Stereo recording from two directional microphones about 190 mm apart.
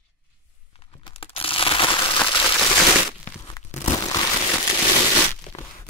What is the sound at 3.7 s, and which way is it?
Crumpling, 35° left (ahead or behind).